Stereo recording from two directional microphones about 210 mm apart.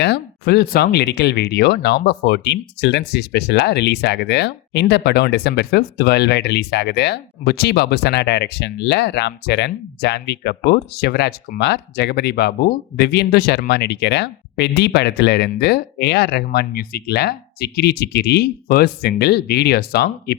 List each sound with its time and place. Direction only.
0.0 s speech: 50° left (ahead or behind)